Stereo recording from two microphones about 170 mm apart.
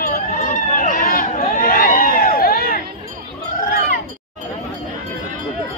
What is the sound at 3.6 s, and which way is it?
Cat, 55° left (ahead or behind).